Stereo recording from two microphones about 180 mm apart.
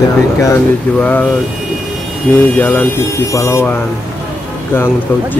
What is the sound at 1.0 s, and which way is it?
Speech, 10° left (ahead or behind).